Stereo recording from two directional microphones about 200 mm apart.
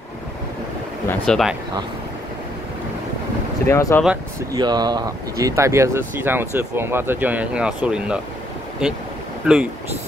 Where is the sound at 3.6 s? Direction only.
15° left (ahead or behind).